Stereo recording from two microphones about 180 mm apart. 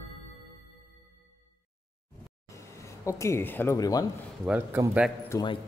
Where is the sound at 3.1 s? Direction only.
15° left (ahead or behind).